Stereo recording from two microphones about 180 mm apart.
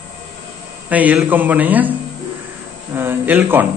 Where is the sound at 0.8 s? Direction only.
10° right (ahead or behind).